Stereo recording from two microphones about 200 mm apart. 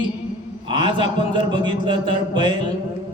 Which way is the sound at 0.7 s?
25° right (ahead or behind).